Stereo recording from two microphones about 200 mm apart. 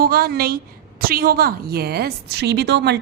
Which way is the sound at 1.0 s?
50° right (ahead or behind).